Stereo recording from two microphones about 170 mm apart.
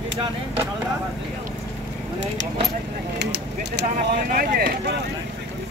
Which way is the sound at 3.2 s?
80° right.